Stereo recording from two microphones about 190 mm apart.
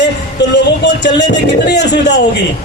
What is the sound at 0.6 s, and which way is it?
A man's voice, 65° left (ahead or behind).